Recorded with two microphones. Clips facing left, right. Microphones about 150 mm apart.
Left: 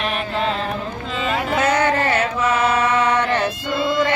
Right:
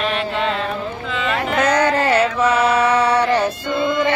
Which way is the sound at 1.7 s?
40° right (ahead or behind).